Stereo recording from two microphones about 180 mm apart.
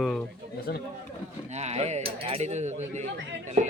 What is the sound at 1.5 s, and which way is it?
Speech, 40° right (ahead or behind).